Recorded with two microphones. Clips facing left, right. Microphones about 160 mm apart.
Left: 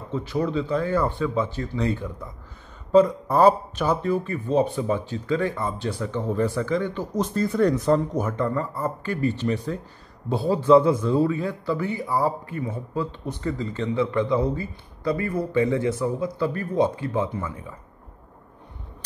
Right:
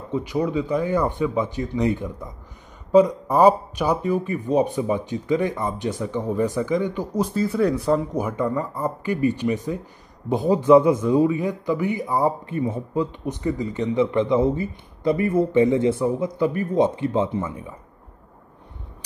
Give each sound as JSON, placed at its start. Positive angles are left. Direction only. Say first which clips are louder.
{"t": 0.1, "sound": "a man's voice", "louder": "right 2 dB", "side_deg": -15}